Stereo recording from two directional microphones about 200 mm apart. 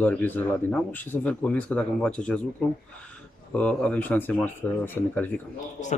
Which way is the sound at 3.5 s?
5° left (ahead or behind).